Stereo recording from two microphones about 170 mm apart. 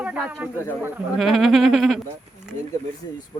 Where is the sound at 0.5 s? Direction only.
15° left (ahead or behind).